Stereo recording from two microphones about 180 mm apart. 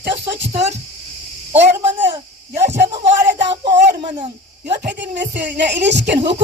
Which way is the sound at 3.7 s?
70° right (ahead or behind).